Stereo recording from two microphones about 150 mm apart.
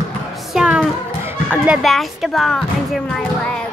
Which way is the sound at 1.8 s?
Centre (ahead or behind).